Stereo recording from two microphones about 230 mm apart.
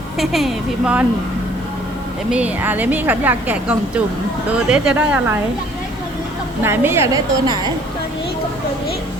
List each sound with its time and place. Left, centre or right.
0.2 s speech: centre
2.3 s a woman's voice: centre
6.6 s a woman's voice: centre